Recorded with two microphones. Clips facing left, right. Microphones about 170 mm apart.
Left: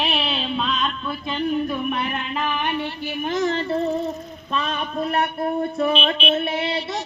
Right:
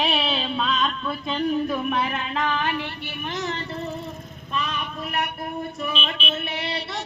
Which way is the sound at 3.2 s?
50° left (ahead or behind).